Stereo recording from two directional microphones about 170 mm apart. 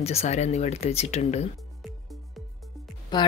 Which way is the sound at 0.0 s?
40° left (ahead or behind).